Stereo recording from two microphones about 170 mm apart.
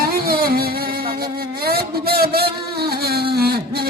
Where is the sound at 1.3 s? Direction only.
65° right (ahead or behind).